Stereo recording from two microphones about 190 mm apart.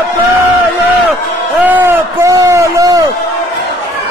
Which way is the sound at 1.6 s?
10° right (ahead or behind).